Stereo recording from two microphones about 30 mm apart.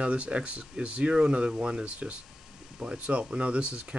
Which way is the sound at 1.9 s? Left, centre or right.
Right.